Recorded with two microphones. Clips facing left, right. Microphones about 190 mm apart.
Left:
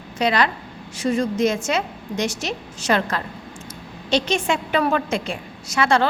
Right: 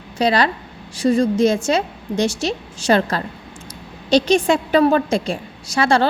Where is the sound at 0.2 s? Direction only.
35° right (ahead or behind).